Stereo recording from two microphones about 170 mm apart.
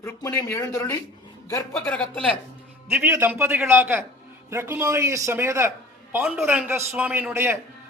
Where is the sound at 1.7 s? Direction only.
5° left (ahead or behind).